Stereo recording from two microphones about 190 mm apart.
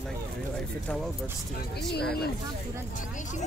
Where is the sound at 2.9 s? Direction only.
40° left (ahead or behind).